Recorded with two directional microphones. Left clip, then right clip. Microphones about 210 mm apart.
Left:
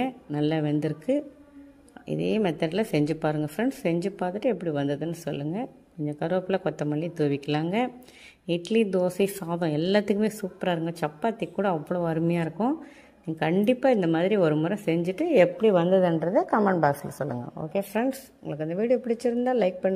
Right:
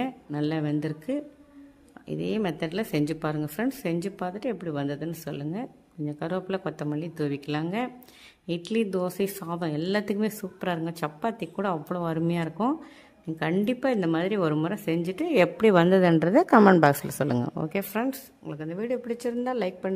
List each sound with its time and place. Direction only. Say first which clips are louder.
0.0 s speech: left 2 dB; 5° left (ahead or behind)
15.4 s a woman's voice: right 1 dB; 20° right (ahead or behind)
17.9 s speech: left 2 dB; centre (ahead or behind)